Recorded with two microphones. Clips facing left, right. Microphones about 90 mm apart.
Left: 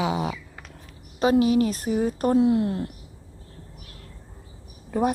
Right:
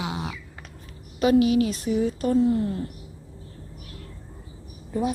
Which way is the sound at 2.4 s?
85° left.